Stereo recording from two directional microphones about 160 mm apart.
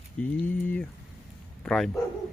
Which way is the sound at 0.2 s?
10° left (ahead or behind).